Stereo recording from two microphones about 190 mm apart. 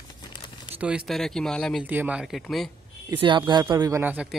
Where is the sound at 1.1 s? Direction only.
Centre (ahead or behind).